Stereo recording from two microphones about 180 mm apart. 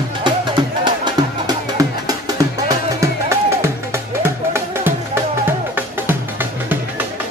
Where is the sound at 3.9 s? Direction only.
15° right (ahead or behind).